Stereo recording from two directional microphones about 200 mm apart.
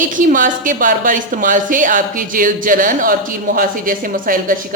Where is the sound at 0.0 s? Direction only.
40° right (ahead or behind).